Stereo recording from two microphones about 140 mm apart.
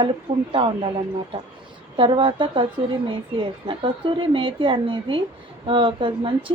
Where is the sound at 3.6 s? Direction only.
40° right (ahead or behind).